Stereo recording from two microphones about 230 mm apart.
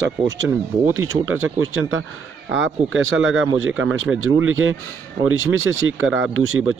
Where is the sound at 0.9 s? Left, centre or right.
Right.